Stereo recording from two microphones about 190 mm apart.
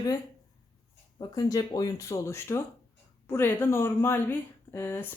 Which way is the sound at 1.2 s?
20° left (ahead or behind).